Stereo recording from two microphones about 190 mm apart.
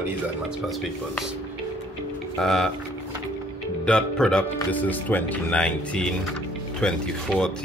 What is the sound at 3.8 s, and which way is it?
Speech, 5° left (ahead or behind).